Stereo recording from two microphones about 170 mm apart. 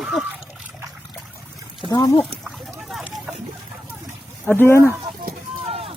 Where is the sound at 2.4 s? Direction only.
Centre (ahead or behind).